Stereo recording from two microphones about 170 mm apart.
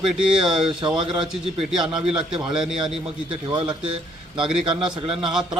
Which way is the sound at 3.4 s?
25° right (ahead or behind).